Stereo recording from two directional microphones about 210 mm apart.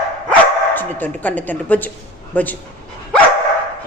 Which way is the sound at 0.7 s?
10° left (ahead or behind).